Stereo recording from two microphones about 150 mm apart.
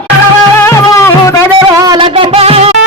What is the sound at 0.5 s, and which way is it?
Music, 15° left (ahead or behind).